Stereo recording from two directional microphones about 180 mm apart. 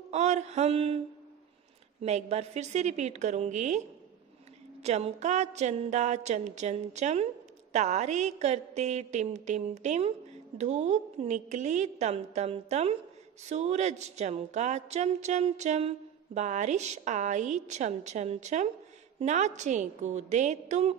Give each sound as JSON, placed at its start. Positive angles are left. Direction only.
{"t": 0.1, "sound": "a woman's voice", "side_deg": -40}
{"t": 4.8, "sound": "a woman's voice", "side_deg": -40}